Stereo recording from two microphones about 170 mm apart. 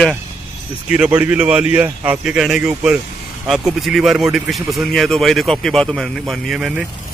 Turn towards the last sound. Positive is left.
turn(degrees=-5)  # may be behind; listen again after turning